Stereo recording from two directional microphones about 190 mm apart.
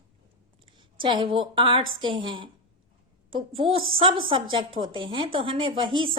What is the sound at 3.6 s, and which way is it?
Speech, 30° right (ahead or behind).